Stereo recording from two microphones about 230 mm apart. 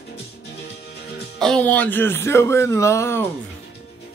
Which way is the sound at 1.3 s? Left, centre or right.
Centre.